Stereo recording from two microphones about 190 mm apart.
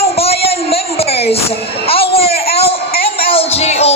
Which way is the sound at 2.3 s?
55° left (ahead or behind).